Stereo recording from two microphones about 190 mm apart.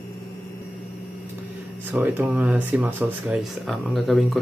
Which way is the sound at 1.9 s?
10° right (ahead or behind).